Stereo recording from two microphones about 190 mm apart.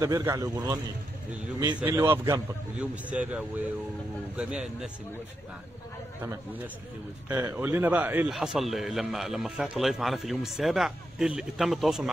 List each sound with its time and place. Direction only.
0.0 s a man's voice: 20° right (ahead or behind)
1.8 s a man's voice: 10° right (ahead or behind)
7.2 s a man's voice: 10° right (ahead or behind)